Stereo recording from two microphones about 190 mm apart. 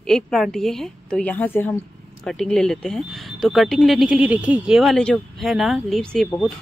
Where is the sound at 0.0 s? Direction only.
Centre (ahead or behind).